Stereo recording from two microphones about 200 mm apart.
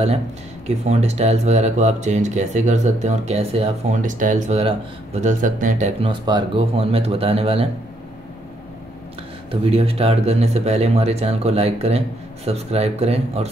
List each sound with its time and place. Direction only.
0.7 s speech: 35° right (ahead or behind)
9.5 s speech: 30° right (ahead or behind)